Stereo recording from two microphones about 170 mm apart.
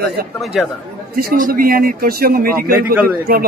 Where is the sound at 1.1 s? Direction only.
55° right (ahead or behind).